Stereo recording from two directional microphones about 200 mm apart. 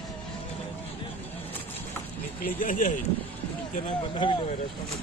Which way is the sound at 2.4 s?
40° left (ahead or behind).